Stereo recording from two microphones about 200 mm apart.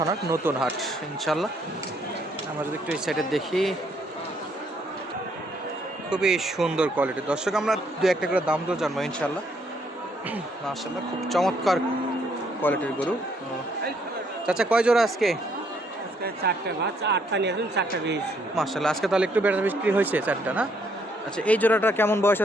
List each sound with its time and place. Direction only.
0.0 s speech: 15° right (ahead or behind)
0.6 s speech: centre (ahead or behind)
2.8 s speech: centre (ahead or behind)
6.1 s speech: 5° right (ahead or behind)
11.2 s speech: centre (ahead or behind)
14.4 s speech: 5° right (ahead or behind)
16.2 s speech: 50° right (ahead or behind)
18.5 s speech: centre (ahead or behind)
21.3 s speech: 5° left (ahead or behind)